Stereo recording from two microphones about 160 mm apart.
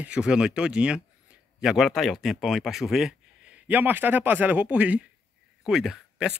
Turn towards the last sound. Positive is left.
turn(degrees=-5)  # may be behind; listen again after turning